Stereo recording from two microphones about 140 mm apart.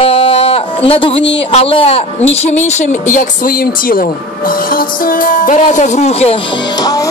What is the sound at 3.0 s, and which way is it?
Speech, 65° left (ahead or behind).